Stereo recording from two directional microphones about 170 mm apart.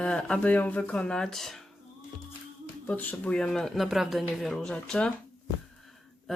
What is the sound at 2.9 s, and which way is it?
A woman's voice, 10° left (ahead or behind).